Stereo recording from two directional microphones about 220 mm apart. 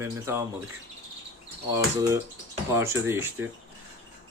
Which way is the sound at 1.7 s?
15° right (ahead or behind).